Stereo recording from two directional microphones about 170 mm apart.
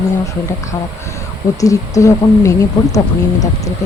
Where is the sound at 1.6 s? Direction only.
20° left (ahead or behind).